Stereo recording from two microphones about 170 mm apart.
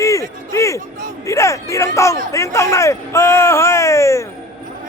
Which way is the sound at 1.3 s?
20° left (ahead or behind).